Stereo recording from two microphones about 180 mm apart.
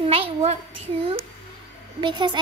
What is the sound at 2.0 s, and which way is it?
Speech, 25° right (ahead or behind).